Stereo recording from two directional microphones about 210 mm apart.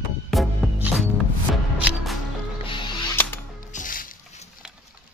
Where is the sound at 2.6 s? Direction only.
25° left (ahead or behind).